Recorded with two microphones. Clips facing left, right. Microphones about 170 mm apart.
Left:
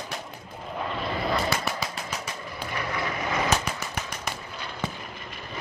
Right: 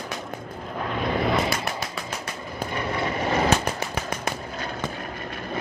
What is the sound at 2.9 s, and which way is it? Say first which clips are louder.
Vehicle: right 5 dB; 30° right (ahead or behind).